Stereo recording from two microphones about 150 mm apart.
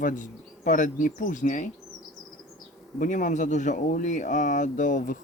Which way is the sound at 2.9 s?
60° left (ahead or behind).